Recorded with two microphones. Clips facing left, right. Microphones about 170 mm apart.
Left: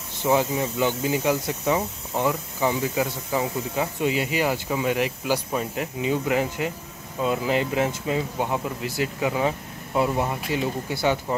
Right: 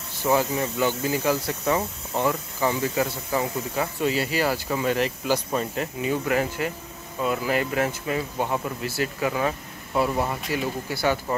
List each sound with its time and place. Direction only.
0.2 s speech: 15° left (ahead or behind)